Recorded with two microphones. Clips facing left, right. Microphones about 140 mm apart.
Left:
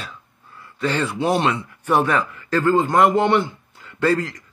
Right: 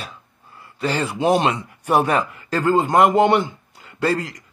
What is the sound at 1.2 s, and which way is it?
Speech, 20° right (ahead or behind).